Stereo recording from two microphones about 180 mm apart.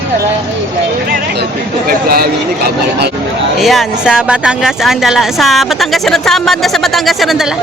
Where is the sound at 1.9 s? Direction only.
55° right (ahead or behind).